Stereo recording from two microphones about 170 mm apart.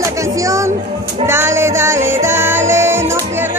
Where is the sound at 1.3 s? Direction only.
15° right (ahead or behind).